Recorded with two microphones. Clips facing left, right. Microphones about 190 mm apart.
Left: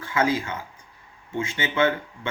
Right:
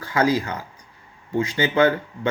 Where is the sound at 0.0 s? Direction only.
40° right (ahead or behind).